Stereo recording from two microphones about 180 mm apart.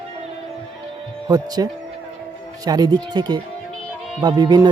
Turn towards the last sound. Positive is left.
turn(degrees=-25)  # may be behind; listen again after turning